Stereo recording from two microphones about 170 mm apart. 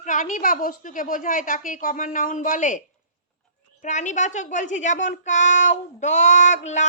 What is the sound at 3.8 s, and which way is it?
Speech, 45° left (ahead or behind).